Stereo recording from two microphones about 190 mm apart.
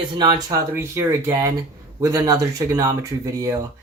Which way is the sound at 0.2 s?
20° right (ahead or behind).